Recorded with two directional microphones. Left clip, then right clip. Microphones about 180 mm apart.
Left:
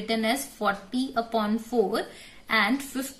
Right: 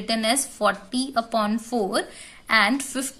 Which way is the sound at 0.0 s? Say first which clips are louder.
Right 3 dB; 45° right (ahead or behind).